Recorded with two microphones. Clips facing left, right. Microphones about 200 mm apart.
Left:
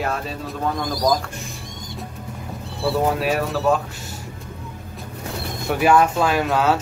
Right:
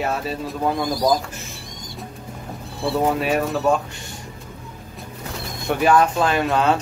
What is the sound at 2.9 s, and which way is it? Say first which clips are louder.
Speech: even; centre (ahead or behind).